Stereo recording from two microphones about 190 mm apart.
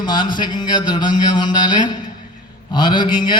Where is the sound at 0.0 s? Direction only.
25° left (ahead or behind).